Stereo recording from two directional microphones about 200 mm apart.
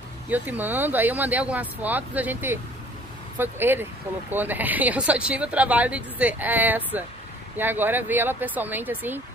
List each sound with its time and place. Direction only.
0.3 s speech: 10° right (ahead or behind)